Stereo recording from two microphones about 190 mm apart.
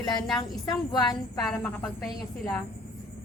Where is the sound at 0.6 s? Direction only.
20° left (ahead or behind).